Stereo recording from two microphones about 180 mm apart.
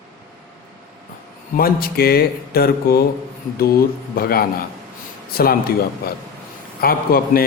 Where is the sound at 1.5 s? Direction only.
55° left (ahead or behind).